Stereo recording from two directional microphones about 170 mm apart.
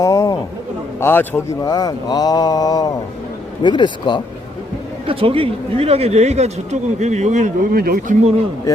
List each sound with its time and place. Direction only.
0.0 s speech: 20° left (ahead or behind)
1.7 s speech: 20° left (ahead or behind)
5.0 s speech: 35° right (ahead or behind)